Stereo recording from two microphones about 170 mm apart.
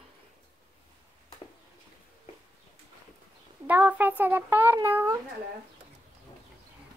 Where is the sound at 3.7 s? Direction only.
10° right (ahead or behind).